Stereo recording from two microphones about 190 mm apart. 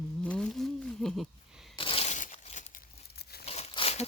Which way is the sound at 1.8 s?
30° left (ahead or behind).